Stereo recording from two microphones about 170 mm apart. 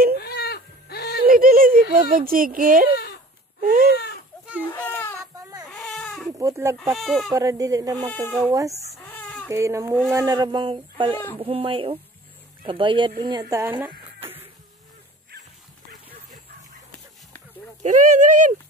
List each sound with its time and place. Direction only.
0.2 s cat: 70° left (ahead or behind)
1.2 s a sound: 60° right (ahead or behind)
3.6 s speech: 50° right (ahead or behind)
3.9 s speech: 75° left (ahead or behind)
4.7 s speech: 15° left (ahead or behind)
5.7 s baby cry: 5° left (ahead or behind)
6.3 s speech: 15° right (ahead or behind)
6.8 s speech: centre (ahead or behind)
7.3 s speech: 20° right (ahead or behind)
8.1 s speech: 5° left (ahead or behind)
8.4 s speech: 20° right (ahead or behind)
8.9 s chicken: 10° left (ahead or behind)
9.5 s speech: 15° right (ahead or behind)
17.8 s speech: 45° right (ahead or behind)